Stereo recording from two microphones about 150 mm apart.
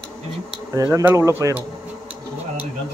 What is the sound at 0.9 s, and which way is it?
Speech, 20° right (ahead or behind).